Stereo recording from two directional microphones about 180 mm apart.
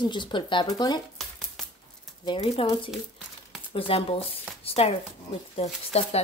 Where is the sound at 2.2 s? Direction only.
30° left (ahead or behind).